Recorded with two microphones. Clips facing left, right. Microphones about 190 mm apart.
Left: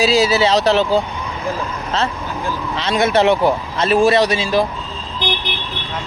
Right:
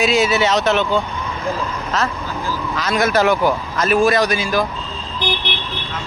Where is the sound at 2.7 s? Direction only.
25° left (ahead or behind).